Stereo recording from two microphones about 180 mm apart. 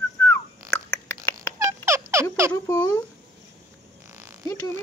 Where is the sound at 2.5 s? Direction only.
15° left (ahead or behind).